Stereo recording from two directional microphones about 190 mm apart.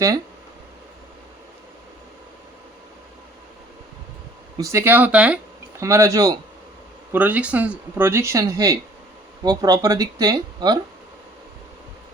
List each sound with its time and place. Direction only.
4.5 s speech: 15° right (ahead or behind)